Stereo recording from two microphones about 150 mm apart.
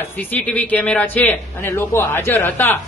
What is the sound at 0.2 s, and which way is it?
A man's voice, 10° left (ahead or behind).